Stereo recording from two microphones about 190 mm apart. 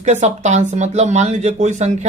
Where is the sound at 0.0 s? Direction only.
35° right (ahead or behind).